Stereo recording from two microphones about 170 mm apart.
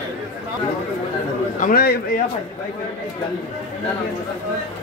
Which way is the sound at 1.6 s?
60° left (ahead or behind).